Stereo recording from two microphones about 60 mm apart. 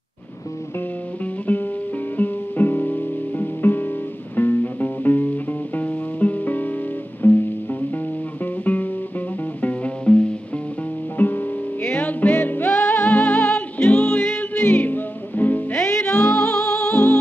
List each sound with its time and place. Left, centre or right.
1.5 s music: left
8.7 s music: left
15.9 s music: left
16.2 s music: centre